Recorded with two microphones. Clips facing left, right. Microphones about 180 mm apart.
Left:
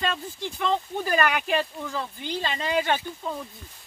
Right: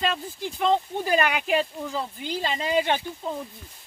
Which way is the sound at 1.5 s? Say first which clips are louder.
Right 2 dB; 20° right (ahead or behind).